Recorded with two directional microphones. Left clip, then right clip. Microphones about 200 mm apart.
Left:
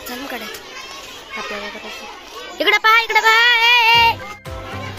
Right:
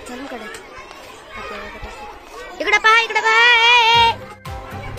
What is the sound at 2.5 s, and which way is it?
Speech, 20° left (ahead or behind).